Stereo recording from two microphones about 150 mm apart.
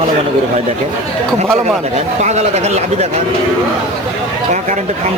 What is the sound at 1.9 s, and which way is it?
Speech, 50° right (ahead or behind).